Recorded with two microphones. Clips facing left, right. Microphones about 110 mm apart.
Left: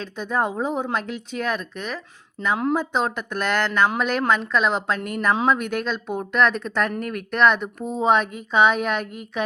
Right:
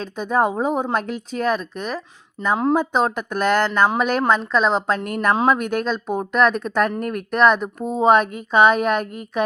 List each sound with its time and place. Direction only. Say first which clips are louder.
0.0 s speech: right 4 dB; 45° right (ahead or behind)
2.7 s speech: right 4 dB; 45° right (ahead or behind)
4.3 s speech: right 2 dB; 35° right (ahead or behind)
5.0 s speech: right 2 dB; 50° right (ahead or behind)